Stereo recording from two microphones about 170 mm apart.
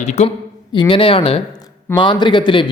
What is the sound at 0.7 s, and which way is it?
Speech, 30° left (ahead or behind).